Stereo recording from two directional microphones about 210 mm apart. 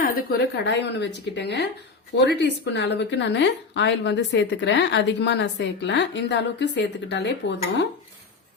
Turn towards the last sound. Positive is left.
turn(degrees=55)  # may be behind; listen again after turning